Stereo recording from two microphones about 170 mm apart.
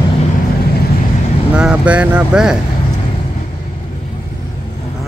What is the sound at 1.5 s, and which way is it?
Speech, 5° right (ahead or behind).